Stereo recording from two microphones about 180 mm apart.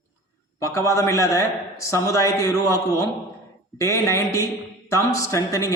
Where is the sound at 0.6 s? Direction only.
15° left (ahead or behind).